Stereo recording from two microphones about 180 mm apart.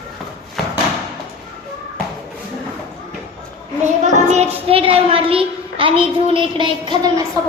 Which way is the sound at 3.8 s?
40° right (ahead or behind).